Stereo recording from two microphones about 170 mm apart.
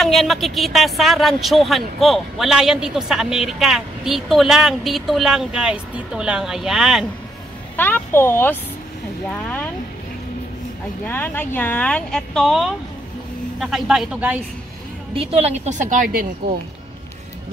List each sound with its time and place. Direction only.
0.0 s speech: centre (ahead or behind)
7.7 s speech: 10° left (ahead or behind)
11.1 s speech: 10° left (ahead or behind); by 14.4 s 5° right (ahead or behind)
15.1 s a woman's voice: 35° right (ahead or behind); by 16.5 s 55° right (ahead or behind)